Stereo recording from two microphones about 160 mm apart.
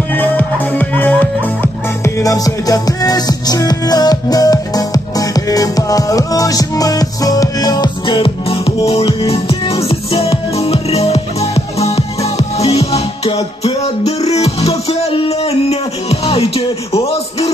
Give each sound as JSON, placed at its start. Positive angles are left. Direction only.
{"t": 0.1, "sound": "speech", "side_deg": 10}
{"t": 9.3, "sound": "music", "side_deg": 35}